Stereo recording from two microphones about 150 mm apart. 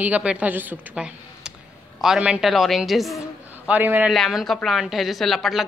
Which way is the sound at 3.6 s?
10° right (ahead or behind).